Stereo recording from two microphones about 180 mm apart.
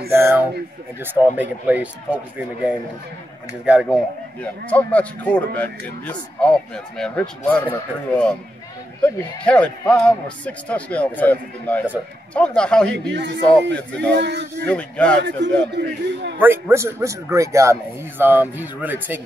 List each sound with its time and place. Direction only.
0.1 s a man's voice: 15° right (ahead or behind)
1.7 s a man's voice: 5° right (ahead or behind)
4.4 s a man's voice: 10° left (ahead or behind)
12.9 s a man's voice: 70° right (ahead or behind)
14.7 s a man's voice: 5° left (ahead or behind)
15.2 s a man's voice: 75° right (ahead or behind)
16.3 s a man's voice: 10° right (ahead or behind)